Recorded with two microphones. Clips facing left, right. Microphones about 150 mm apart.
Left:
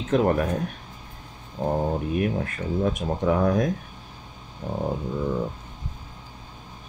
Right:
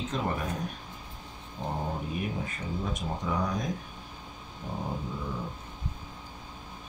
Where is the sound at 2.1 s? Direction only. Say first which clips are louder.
Left 8 dB; 65° left (ahead or behind).